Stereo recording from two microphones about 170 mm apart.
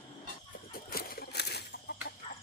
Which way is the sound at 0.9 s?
65° left (ahead or behind).